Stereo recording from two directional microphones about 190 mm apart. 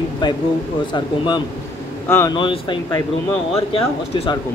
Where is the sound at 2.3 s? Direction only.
25° left (ahead or behind).